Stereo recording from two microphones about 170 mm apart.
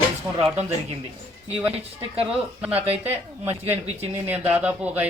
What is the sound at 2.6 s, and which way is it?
Speech, 10° right (ahead or behind).